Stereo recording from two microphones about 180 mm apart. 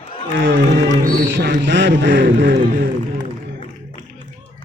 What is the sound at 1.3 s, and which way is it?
A man's voice, 90° right.